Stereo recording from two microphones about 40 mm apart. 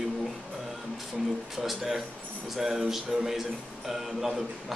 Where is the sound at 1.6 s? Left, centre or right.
Centre.